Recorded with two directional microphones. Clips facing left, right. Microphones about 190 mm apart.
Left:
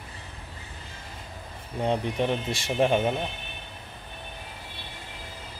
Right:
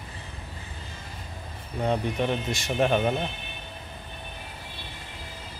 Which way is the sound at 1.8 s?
25° left (ahead or behind).